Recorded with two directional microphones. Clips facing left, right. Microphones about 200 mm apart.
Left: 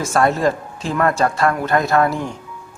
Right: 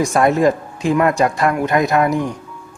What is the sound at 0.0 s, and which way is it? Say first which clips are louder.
Speech: right 3 dB; 15° right (ahead or behind).